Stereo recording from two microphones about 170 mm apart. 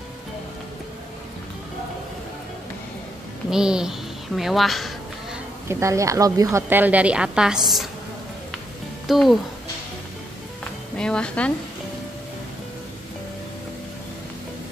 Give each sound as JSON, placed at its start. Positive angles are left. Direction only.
{"t": 3.4, "sound": "a woman's voice", "side_deg": -5}
{"t": 5.7, "sound": "a woman's voice", "side_deg": -15}
{"t": 9.0, "sound": "speech", "side_deg": 0}
{"t": 11.0, "sound": "a woman's voice", "side_deg": 5}